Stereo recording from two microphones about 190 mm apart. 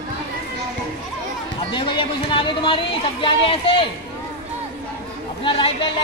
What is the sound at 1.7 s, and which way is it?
Speech, 25° left (ahead or behind).